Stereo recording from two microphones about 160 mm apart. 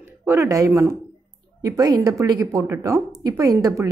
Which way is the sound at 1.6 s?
25° right (ahead or behind).